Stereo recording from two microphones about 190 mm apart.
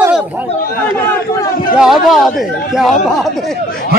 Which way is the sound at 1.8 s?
Centre (ahead or behind).